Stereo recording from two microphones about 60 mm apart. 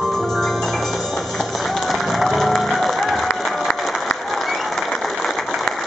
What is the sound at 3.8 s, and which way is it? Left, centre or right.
Applause, centre.